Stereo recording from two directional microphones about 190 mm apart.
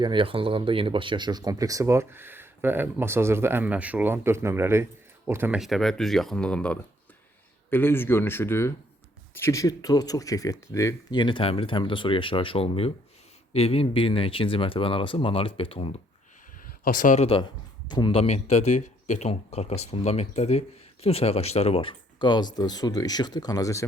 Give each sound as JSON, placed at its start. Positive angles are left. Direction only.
{"t": 0.0, "sound": "speech", "side_deg": -25}
{"t": 5.5, "sound": "speech", "side_deg": 0}
{"t": 16.8, "sound": "speech", "side_deg": 45}
{"t": 17.8, "sound": "speech", "side_deg": 25}